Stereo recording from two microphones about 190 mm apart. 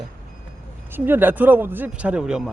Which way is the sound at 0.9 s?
10° right (ahead or behind).